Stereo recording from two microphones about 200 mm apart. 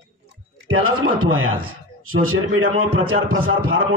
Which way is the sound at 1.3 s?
90° right.